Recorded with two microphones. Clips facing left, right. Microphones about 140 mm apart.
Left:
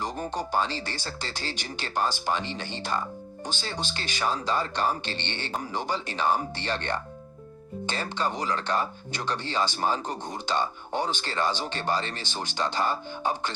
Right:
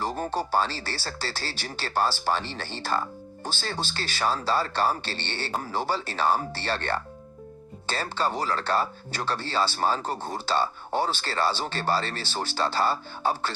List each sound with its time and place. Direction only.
0.3 s speech: 15° left (ahead or behind)